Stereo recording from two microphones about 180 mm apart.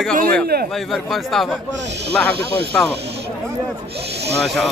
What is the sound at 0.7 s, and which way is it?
Speech, centre (ahead or behind).